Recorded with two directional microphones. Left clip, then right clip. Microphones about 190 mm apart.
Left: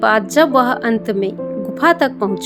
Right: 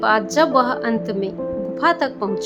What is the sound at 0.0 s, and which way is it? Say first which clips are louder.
A woman's voice: left 4 dB; 25° left (ahead or behind).